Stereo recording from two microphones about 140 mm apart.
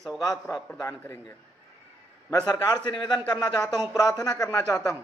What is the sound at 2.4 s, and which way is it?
Speech, 30° left (ahead or behind).